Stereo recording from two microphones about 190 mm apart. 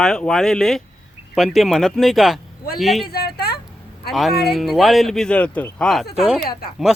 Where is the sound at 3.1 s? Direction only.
55° left (ahead or behind).